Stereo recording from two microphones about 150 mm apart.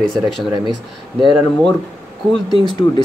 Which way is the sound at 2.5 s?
30° left (ahead or behind).